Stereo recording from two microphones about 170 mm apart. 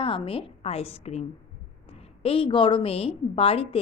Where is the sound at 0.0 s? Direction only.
30° left (ahead or behind).